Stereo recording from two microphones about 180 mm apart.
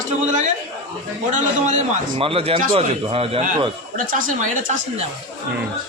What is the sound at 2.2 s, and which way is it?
A man's voice, 30° right (ahead or behind).